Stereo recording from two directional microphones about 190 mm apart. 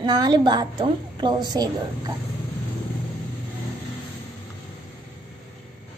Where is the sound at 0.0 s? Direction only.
20° right (ahead or behind).